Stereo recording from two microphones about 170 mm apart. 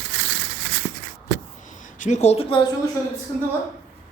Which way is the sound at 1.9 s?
45° left (ahead or behind).